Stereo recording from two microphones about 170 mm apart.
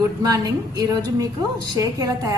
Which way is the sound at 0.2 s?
20° right (ahead or behind).